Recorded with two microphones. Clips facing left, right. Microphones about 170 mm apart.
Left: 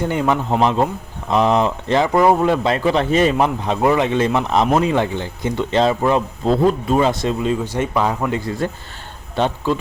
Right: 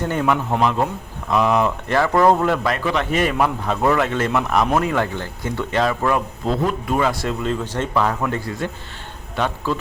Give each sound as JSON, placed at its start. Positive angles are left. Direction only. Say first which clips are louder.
{"t": 0.0, "sound": "a man's voice", "louder": "left 2 dB", "side_deg": 15}
{"t": 0.6, "sound": "speech", "louder": "left 3 dB", "side_deg": 30}
{"t": 2.7, "sound": "speech", "louder": "left 5 dB", "side_deg": 30}
{"t": 8.4, "sound": "a man's voice", "louder": "left 4 dB", "side_deg": 35}